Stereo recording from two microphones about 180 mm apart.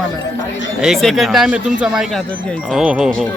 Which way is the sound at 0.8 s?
Centre (ahead or behind).